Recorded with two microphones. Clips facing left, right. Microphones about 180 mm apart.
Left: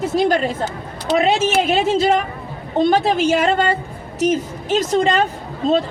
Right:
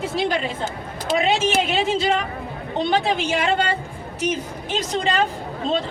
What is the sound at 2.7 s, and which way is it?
A woman's voice, 40° left (ahead or behind).